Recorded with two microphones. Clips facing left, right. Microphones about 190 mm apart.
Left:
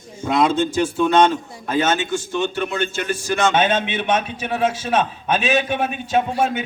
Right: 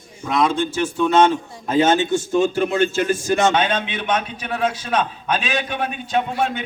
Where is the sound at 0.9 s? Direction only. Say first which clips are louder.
Even; 5° right (ahead or behind).